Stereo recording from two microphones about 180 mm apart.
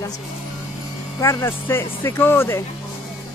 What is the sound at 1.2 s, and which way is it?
A woman's voice, 15° left (ahead or behind).